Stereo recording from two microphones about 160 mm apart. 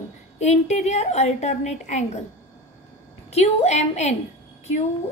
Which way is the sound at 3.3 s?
40° left (ahead or behind).